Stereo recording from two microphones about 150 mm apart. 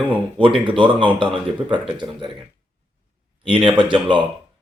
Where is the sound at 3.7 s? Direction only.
30° right (ahead or behind).